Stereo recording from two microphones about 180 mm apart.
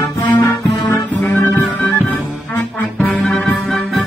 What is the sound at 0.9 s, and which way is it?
Music, centre (ahead or behind).